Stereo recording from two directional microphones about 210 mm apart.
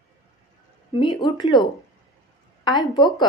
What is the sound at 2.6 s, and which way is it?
Speech, 20° left (ahead or behind).